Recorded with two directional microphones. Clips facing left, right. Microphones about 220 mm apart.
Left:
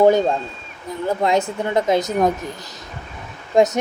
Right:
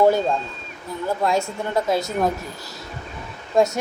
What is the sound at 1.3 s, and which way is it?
Speech, 20° left (ahead or behind).